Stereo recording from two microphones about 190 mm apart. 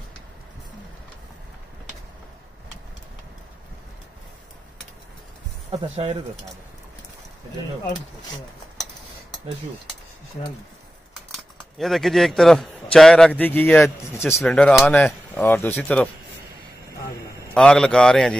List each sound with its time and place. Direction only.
5.7 s speech: 25° right (ahead or behind)
11.3 s a man's voice: centre (ahead or behind)
17.6 s a man's voice: 5° left (ahead or behind)